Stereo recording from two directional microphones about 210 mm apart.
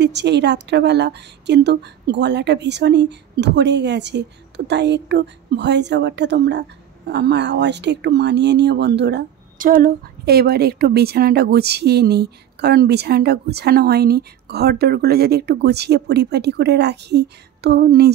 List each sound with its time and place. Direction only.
0.0 s a woman's voice: 55° right (ahead or behind)